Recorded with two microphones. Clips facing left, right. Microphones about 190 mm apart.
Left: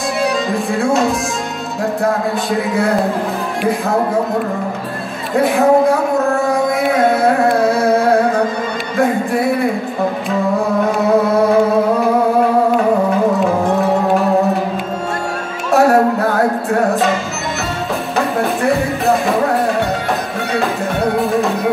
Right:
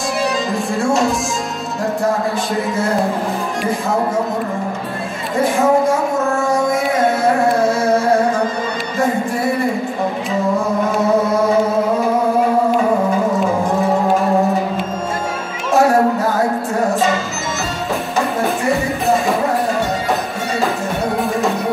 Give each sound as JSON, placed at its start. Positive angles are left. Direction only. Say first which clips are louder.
{"t": 0.2, "sound": "music", "louder": "left 3 dB", "side_deg": 0}
{"t": 2.0, "sound": "speech", "louder": "left 2 dB", "side_deg": 0}
{"t": 5.6, "sound": "speech", "louder": "left 3 dB", "side_deg": 60}
{"t": 7.7, "sound": "carnatic music", "louder": "left 2 dB", "side_deg": 60}
{"t": 9.0, "sound": "music", "louder": "left 2 dB", "side_deg": 0}
{"t": 15.7, "sound": "music", "louder": "left 2 dB", "side_deg": 0}
{"t": 16.2, "sound": "music", "louder": "left 2 dB", "side_deg": 65}
{"t": 18.6, "sound": "music", "louder": "left 2 dB", "side_deg": 0}